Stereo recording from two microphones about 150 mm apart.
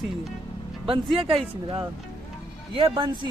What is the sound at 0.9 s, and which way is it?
Speech, 35° right (ahead or behind).